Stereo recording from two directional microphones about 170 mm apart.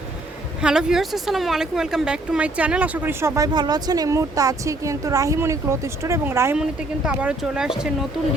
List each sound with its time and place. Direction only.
0.6 s speech: 5° right (ahead or behind)